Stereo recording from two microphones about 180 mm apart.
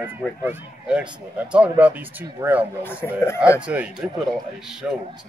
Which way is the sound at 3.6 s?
5° right (ahead or behind).